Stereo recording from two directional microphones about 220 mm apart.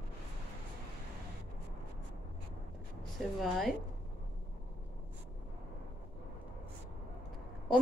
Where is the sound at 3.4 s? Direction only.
Centre (ahead or behind).